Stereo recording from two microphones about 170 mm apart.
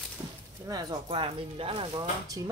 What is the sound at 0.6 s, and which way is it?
Speech, 25° right (ahead or behind).